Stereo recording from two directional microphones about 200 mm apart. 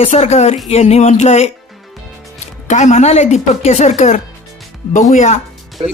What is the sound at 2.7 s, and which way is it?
Speech, 35° left (ahead or behind).